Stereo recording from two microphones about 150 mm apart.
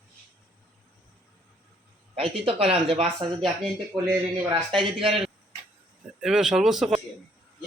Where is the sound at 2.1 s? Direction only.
40° right (ahead or behind).